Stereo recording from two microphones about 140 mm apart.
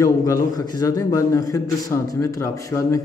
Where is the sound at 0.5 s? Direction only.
30° left (ahead or behind).